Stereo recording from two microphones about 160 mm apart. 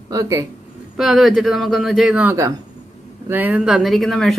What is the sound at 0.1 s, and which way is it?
Speech, 20° right (ahead or behind).